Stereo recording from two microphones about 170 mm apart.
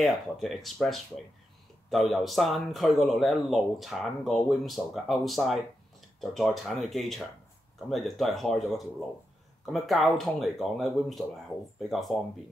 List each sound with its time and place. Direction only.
0.0 s speech: centre (ahead or behind)